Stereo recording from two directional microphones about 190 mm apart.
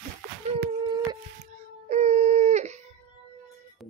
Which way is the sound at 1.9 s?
35° right (ahead or behind).